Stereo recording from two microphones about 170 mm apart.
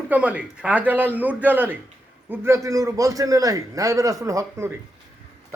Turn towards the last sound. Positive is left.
turn(degrees=-20)  # may be behind; listen again after turning